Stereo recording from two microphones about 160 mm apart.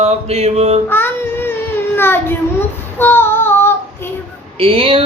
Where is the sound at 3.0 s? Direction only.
15° left (ahead or behind).